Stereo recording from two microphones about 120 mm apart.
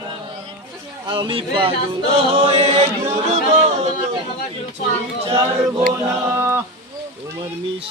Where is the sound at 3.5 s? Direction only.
70° right (ahead or behind).